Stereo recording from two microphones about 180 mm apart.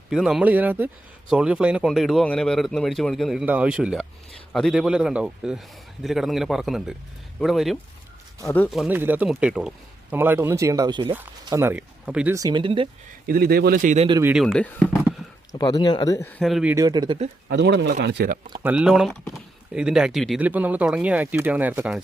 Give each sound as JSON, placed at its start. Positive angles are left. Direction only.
{"t": 0.1, "sound": "speech", "side_deg": 0}
{"t": 8.4, "sound": "speech", "side_deg": 10}
{"t": 8.7, "sound": "speech", "side_deg": -5}
{"t": 12.3, "sound": "speech", "side_deg": -20}
{"t": 13.2, "sound": "speech", "side_deg": -60}
{"t": 14.1, "sound": "speech", "side_deg": -15}
{"t": 14.3, "sound": "speech", "side_deg": 0}
{"t": 15.5, "sound": "speech", "side_deg": 20}
{"t": 16.4, "sound": "speech", "side_deg": 0}
{"t": 16.7, "sound": "speech", "side_deg": -20}
{"t": 17.5, "sound": "speech", "side_deg": -70}
{"t": 18.6, "sound": "speech", "side_deg": -5}